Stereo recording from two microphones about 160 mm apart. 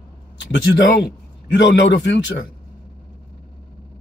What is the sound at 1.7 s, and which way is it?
Speech, 90° left.